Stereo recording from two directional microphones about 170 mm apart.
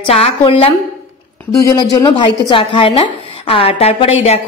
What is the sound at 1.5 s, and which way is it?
A woman's voice, 20° left (ahead or behind).